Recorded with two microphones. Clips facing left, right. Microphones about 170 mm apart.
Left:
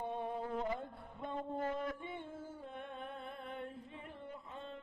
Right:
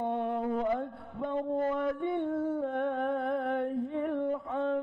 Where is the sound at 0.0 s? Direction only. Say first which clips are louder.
Right 9 dB; 65° right (ahead or behind).